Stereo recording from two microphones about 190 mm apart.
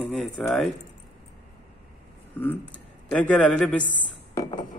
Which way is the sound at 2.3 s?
10° left (ahead or behind).